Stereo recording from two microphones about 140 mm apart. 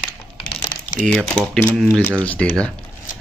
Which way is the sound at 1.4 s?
5° left (ahead or behind).